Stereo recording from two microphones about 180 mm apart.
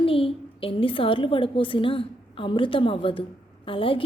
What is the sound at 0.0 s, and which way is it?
A woman's voice, 30° left (ahead or behind).